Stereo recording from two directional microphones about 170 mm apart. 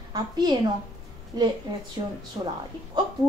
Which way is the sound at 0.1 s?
25° right (ahead or behind).